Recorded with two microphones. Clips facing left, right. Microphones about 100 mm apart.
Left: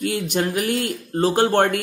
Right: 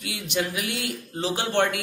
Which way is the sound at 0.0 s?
45° left (ahead or behind).